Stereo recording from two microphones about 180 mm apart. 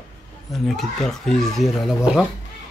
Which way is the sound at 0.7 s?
Centre (ahead or behind).